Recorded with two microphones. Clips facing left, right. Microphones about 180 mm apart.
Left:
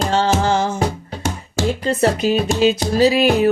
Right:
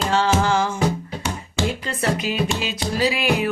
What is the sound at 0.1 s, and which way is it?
Music, 35° left (ahead or behind).